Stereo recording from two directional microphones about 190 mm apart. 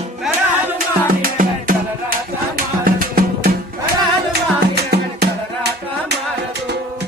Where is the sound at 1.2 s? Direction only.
45° right (ahead or behind).